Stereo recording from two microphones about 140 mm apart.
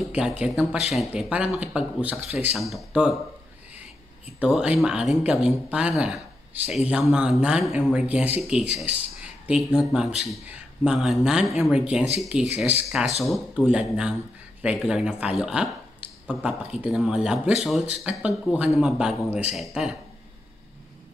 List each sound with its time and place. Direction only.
0.0 s speech: 5° right (ahead or behind)
4.4 s speech: 5° right (ahead or behind)